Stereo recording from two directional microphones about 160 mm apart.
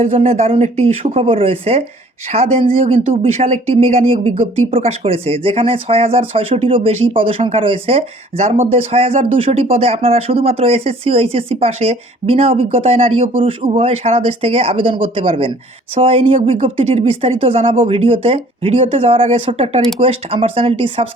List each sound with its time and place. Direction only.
0.0 s speech: 40° right (ahead or behind)